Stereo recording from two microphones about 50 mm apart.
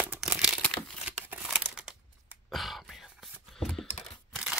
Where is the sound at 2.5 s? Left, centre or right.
Centre.